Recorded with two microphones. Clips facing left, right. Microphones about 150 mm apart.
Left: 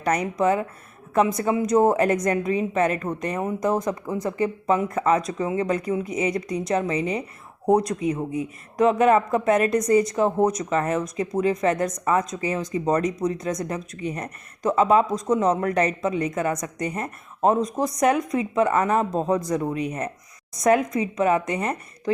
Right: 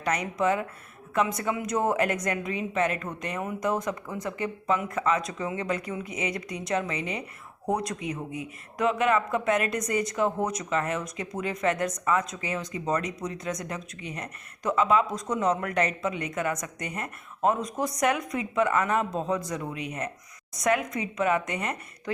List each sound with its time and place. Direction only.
0.0 s speech: 40° left (ahead or behind)